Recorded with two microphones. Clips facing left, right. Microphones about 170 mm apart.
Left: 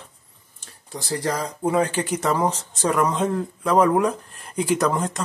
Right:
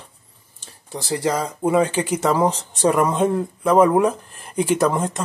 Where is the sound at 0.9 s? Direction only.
25° right (ahead or behind).